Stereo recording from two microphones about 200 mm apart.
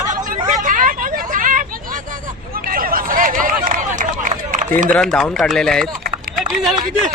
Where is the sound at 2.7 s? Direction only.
45° right (ahead or behind).